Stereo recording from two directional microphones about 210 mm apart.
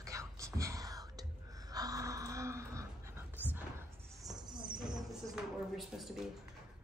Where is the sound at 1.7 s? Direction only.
15° right (ahead or behind).